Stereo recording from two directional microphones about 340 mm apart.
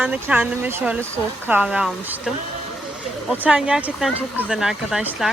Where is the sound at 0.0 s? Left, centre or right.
Centre.